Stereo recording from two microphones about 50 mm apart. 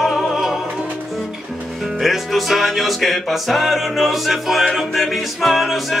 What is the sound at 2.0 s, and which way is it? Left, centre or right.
Music, centre.